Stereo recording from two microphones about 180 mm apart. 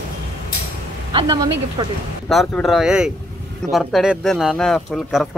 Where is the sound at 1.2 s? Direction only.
20° right (ahead or behind).